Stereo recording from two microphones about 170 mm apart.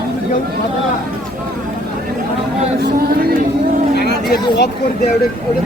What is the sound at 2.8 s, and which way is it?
Speech, 65° right (ahead or behind).